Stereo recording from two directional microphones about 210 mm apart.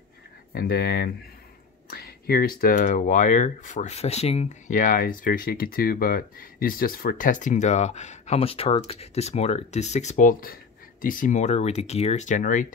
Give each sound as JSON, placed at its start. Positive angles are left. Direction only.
{"t": 0.6, "sound": "speech", "side_deg": 50}